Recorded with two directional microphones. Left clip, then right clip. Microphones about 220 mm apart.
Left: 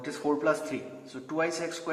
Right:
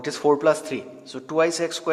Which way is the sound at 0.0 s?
45° right (ahead or behind).